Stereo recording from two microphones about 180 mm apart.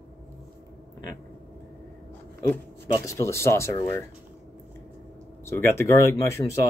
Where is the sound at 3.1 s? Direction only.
15° left (ahead or behind).